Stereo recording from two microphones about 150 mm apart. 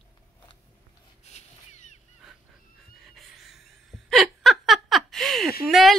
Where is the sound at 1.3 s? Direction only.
50° left (ahead or behind).